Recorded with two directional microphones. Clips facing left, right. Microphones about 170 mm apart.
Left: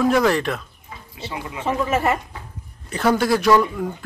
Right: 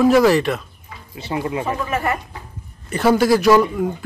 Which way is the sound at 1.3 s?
60° right (ahead or behind).